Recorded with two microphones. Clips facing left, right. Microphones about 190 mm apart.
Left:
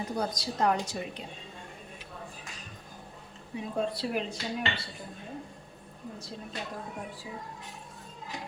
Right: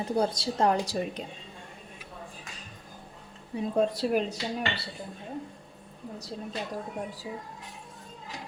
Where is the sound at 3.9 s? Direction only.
45° right (ahead or behind).